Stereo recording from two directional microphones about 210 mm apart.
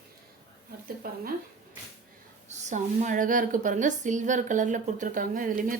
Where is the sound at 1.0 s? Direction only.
45° right (ahead or behind).